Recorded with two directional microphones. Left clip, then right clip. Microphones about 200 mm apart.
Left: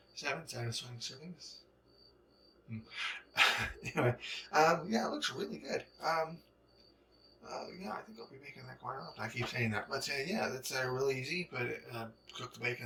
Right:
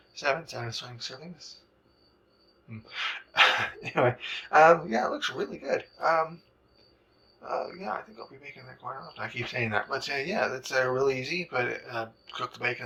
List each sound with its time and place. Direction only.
0.1 s speech: 10° left (ahead or behind)
2.6 s speech: 10° left (ahead or behind)
7.4 s speech: 10° left (ahead or behind)